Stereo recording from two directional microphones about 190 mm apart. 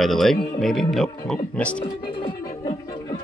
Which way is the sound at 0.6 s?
Centre (ahead or behind).